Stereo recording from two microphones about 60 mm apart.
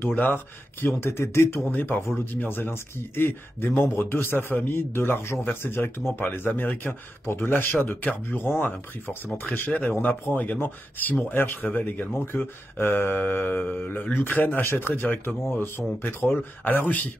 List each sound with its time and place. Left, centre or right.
0.0 s speech: left